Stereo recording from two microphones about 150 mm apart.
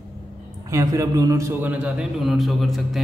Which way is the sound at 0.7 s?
20° right (ahead or behind).